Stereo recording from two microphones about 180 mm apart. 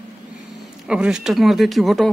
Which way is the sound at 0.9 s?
5° right (ahead or behind).